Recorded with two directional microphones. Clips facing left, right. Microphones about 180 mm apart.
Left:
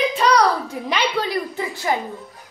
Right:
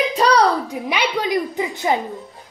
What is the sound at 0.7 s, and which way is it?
A woman's voice, 15° right (ahead or behind).